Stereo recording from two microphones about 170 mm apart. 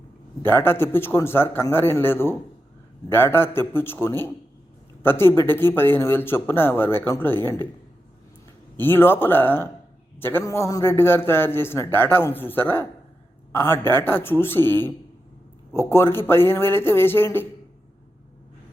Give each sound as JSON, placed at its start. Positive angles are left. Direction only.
{"t": 0.4, "sound": "a man's voice", "side_deg": 15}
{"t": 8.8, "sound": "a man's voice", "side_deg": 10}